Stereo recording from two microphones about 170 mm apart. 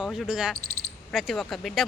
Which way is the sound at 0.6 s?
60° right (ahead or behind).